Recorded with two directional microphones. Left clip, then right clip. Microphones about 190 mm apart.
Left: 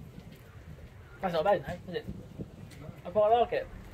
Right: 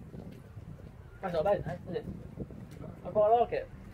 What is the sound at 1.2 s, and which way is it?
Speech, centre (ahead or behind).